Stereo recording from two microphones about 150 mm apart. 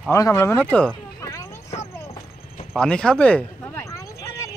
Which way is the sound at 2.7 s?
5° left (ahead or behind).